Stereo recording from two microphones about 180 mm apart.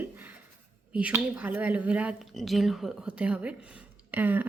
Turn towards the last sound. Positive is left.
turn(degrees=-10)  # may be behind; listen again after turning